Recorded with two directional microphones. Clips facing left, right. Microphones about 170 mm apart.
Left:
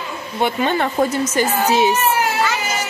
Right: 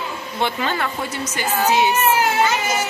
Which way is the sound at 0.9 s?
45° left (ahead or behind).